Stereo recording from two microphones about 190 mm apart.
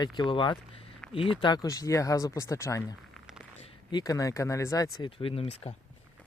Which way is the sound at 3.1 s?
Centre (ahead or behind).